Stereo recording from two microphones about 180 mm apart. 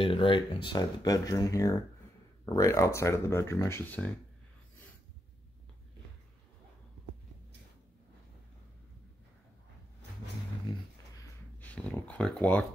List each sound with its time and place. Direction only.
0.0 s speech: 30° left (ahead or behind); by 4.1 s 10° left (ahead or behind)
10.7 s a sound: 25° left (ahead or behind)
11.6 s speech: 10° left (ahead or behind)